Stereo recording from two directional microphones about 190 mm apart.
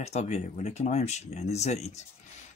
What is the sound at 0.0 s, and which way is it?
Speech, 35° left (ahead or behind).